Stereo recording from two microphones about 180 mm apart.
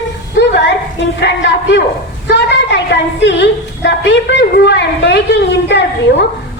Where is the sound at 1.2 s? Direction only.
70° left (ahead or behind).